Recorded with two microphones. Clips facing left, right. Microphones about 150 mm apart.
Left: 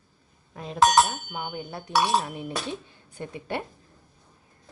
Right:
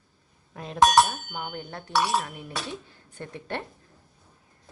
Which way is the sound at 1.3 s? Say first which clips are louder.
Left 2 dB; 10° left (ahead or behind).